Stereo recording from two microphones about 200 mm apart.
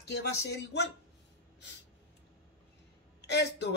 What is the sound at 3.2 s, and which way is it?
Speech, 55° left (ahead or behind).